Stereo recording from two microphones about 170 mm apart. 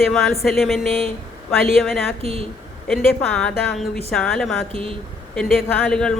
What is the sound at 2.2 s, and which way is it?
Speech, 35° right (ahead or behind).